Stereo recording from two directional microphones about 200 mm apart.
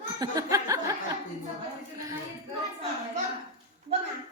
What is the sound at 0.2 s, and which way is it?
Laughter, 15° right (ahead or behind).